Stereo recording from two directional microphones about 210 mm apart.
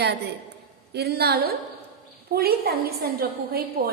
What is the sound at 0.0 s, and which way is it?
A woman's voice, 50° right (ahead or behind).